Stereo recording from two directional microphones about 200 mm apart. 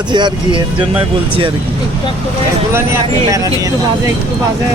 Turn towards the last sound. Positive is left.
turn(degrees=-15)  # may be behind; listen again after turning